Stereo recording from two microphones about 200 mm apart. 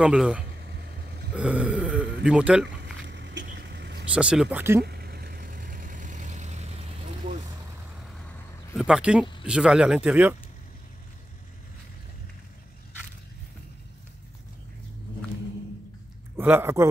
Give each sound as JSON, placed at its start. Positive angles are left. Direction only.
{"t": 0.0, "sound": "speech", "side_deg": -5}
{"t": 2.8, "sound": "vehicle", "side_deg": -60}
{"t": 4.1, "sound": "speech", "side_deg": -5}
{"t": 4.8, "sound": "vehicle", "side_deg": -50}
{"t": 8.7, "sound": "speech", "side_deg": -5}
{"t": 16.3, "sound": "speech", "side_deg": -10}